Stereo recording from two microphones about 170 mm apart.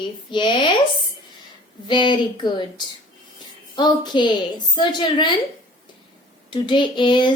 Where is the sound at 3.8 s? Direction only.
25° left (ahead or behind).